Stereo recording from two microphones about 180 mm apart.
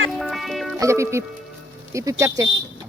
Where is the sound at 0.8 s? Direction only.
15° right (ahead or behind).